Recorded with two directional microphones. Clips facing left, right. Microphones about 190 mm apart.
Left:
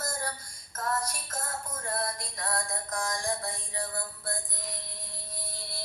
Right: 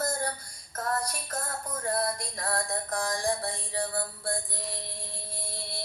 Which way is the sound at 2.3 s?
35° right (ahead or behind).